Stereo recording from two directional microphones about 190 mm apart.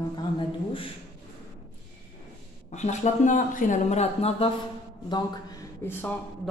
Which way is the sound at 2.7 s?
35° left (ahead or behind).